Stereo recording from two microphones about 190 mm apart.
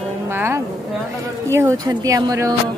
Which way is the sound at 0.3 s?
10° right (ahead or behind).